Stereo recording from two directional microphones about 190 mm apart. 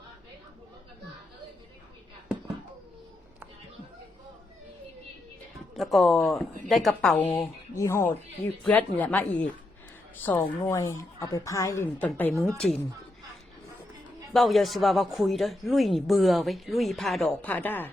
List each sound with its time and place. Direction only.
5.7 s speech: centre (ahead or behind)
7.3 s a woman's voice: 15° left (ahead or behind)
14.3 s speech: centre (ahead or behind)